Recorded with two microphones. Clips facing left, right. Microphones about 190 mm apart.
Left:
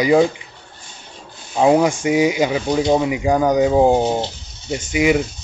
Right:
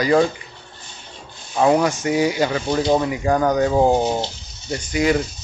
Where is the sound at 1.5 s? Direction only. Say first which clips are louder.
Left 2 dB; 15° left (ahead or behind).